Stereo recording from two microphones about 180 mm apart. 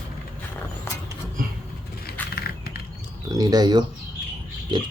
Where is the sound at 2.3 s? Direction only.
60° left (ahead or behind).